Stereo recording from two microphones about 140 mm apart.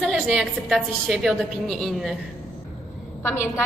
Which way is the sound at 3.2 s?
20° left (ahead or behind).